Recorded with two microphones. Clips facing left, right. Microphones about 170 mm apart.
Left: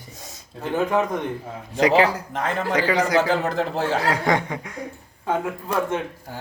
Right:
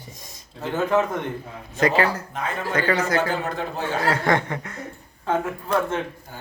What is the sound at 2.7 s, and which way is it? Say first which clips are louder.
Chuckle: left 1 dB; 10° left (ahead or behind).